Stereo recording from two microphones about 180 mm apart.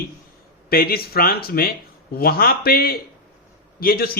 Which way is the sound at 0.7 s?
55° left (ahead or behind).